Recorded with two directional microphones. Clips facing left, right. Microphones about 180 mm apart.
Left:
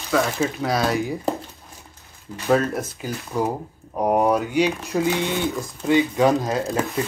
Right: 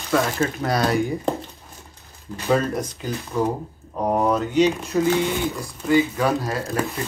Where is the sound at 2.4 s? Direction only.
5° left (ahead or behind).